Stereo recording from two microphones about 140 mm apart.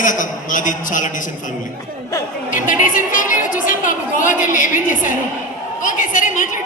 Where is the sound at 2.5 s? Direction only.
70° left (ahead or behind).